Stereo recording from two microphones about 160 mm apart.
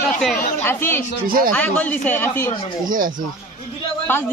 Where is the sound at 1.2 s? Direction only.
65° right (ahead or behind).